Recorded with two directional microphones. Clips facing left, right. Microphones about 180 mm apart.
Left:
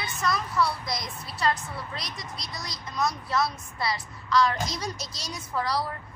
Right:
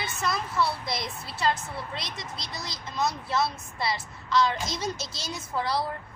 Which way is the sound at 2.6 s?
25° right (ahead or behind).